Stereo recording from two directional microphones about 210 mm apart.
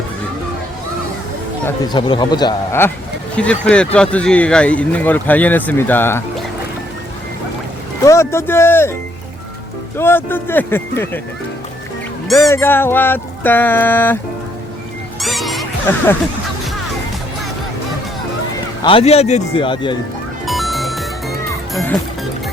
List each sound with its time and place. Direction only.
1.9 s speech: 25° left (ahead or behind)
8.0 s speech: 15° left (ahead or behind)
10.0 s speech: 10° left (ahead or behind)
12.5 s speech: 10° left (ahead or behind)
15.2 s music: centre (ahead or behind)
15.9 s speech: 15° left (ahead or behind)
18.8 s speech: 25° left (ahead or behind)
20.4 s music: centre (ahead or behind)
21.7 s speech: centre (ahead or behind)